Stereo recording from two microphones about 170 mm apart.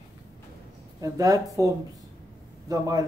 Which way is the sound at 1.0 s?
20° right (ahead or behind).